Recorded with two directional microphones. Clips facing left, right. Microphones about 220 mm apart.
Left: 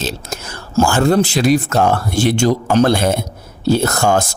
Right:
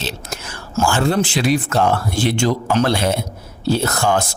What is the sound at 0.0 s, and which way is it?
Speech, 40° left (ahead or behind).